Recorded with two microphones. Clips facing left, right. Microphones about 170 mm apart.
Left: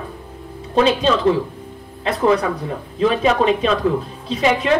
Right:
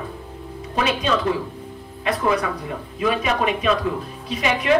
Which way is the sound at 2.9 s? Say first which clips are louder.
Left 6 dB; 30° left (ahead or behind).